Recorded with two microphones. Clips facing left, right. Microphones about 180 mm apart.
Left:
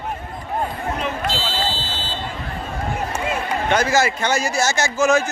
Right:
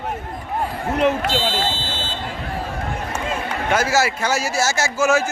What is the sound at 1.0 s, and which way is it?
Speech, 65° right (ahead or behind).